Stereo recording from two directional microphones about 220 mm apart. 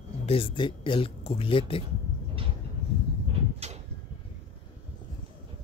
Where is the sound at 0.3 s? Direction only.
25° left (ahead or behind).